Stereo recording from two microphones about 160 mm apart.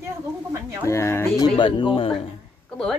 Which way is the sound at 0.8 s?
15° left (ahead or behind).